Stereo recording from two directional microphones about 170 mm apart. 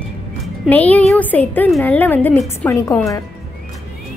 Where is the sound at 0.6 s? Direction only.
10° left (ahead or behind).